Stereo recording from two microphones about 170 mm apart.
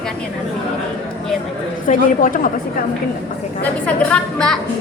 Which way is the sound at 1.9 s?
55° left (ahead or behind).